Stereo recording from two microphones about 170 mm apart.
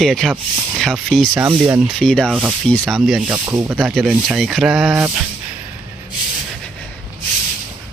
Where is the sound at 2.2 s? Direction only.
10° right (ahead or behind).